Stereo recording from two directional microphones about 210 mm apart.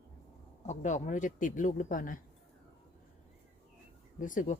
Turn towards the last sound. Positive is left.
turn(degrees=40)  # may be behind; listen again after turning